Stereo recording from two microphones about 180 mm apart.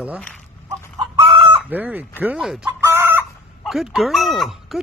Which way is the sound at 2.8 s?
10° right (ahead or behind).